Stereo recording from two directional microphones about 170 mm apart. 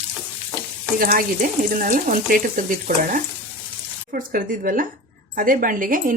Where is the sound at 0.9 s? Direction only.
55° right (ahead or behind).